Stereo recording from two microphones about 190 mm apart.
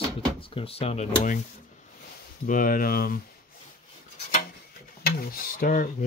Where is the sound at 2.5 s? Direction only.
50° left (ahead or behind).